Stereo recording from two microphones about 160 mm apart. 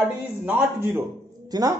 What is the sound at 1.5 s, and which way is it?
Speech, 25° right (ahead or behind).